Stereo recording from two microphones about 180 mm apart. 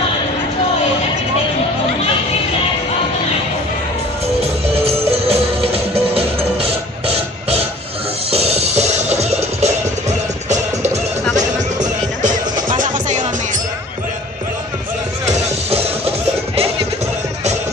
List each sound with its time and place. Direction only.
4.4 s music: 35° right (ahead or behind)
12.7 s music: 45° right (ahead or behind)
15.7 s music: 35° right (ahead or behind)